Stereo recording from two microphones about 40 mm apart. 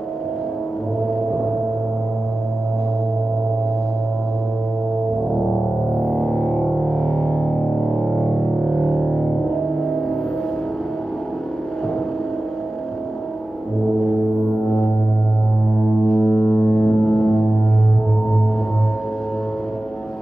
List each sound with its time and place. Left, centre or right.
6.0 s music: centre
16.1 s foghorn: centre